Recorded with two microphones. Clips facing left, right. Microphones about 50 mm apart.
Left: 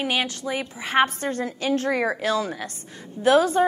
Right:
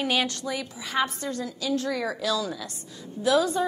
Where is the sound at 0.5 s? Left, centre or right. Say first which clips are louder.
Left 4 dB; left.